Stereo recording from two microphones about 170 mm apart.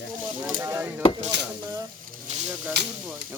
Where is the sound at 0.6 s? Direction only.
15° right (ahead or behind).